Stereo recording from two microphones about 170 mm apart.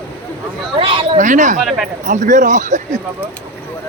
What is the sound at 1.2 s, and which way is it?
A man's voice, 45° right (ahead or behind).